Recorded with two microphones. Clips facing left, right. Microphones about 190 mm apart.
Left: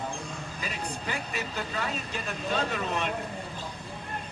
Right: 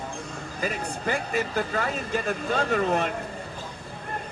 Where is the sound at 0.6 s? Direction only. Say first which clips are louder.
Right 8 dB; 55° right (ahead or behind).